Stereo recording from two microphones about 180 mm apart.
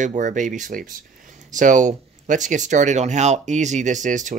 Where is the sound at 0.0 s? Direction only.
45° right (ahead or behind).